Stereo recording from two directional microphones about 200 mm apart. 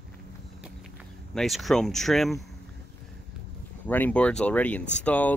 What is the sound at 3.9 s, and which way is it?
Speech, 10° left (ahead or behind).